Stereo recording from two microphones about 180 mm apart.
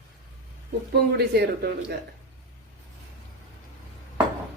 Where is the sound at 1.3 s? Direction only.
60° right (ahead or behind).